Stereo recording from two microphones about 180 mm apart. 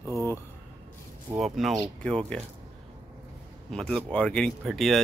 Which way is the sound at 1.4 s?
Centre (ahead or behind).